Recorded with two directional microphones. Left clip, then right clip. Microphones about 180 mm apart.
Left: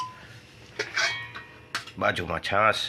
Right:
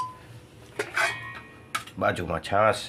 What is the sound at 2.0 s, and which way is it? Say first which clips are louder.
Speech: even; centre (ahead or behind).